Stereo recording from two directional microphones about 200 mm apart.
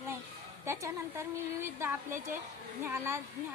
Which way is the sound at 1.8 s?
10° right (ahead or behind).